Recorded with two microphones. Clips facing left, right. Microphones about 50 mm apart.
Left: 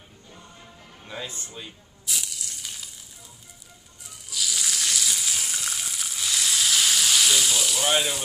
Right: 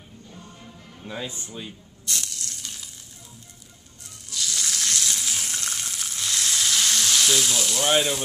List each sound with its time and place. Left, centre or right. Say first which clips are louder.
0.3 s music: right 2 dB; centre
1.2 s speech: right 3 dB; centre
2.0 s a sound: right 1 dB; centre
4.0 s frying: left 1 dB; centre